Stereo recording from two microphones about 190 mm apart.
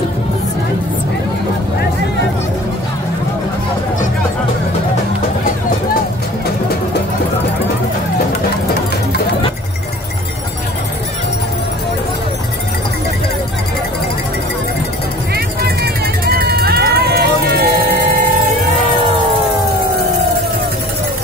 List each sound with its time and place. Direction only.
15.3 s vehicle: 55° right (ahead or behind)